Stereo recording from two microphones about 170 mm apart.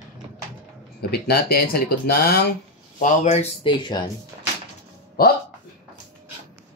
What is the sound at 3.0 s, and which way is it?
Speech, 40° left (ahead or behind).